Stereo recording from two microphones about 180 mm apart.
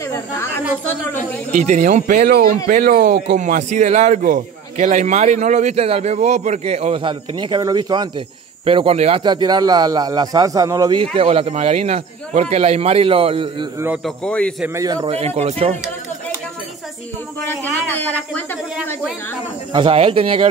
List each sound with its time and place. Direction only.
0.1 s a woman's voice: 15° left (ahead or behind)
1.7 s speech: 40° right (ahead or behind)
3.3 s a man's voice: 45° right (ahead or behind)
14.0 s a woman's voice: 5° left (ahead or behind)
14.6 s a man's voice: 15° right (ahead or behind)
15.0 s a man's voice: 35° right (ahead or behind)
17.9 s a woman's voice: 10° left (ahead or behind)
19.7 s speech: 30° right (ahead or behind)